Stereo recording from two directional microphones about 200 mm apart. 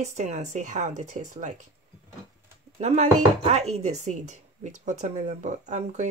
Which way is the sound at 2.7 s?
35° right (ahead or behind).